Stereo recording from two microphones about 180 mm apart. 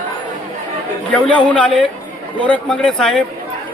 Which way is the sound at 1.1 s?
5° left (ahead or behind).